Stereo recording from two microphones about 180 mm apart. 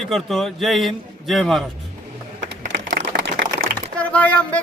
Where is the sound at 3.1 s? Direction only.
60° right (ahead or behind).